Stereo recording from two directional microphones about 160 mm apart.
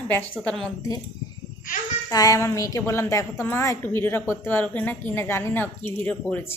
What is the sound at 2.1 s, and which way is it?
A woman's voice, 20° left (ahead or behind).